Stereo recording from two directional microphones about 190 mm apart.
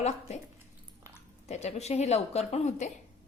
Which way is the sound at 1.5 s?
35° left (ahead or behind).